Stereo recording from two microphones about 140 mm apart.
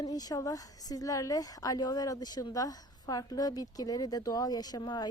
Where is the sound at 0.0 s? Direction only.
25° left (ahead or behind).